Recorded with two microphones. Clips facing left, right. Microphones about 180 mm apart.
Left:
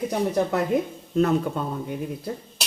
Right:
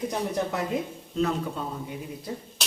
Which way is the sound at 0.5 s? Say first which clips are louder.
Left 6 dB; 55° left (ahead or behind).